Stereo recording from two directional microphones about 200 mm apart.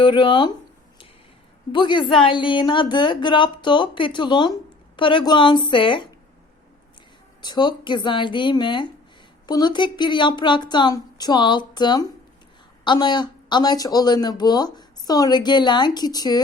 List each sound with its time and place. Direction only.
0.0 s speech: 25° left (ahead or behind)
1.7 s speech: 25° left (ahead or behind)
7.4 s speech: 20° left (ahead or behind)